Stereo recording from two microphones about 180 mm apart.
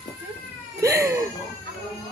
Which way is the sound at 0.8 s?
15° right (ahead or behind).